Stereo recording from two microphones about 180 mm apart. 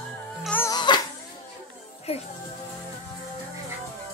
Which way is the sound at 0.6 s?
25° left (ahead or behind).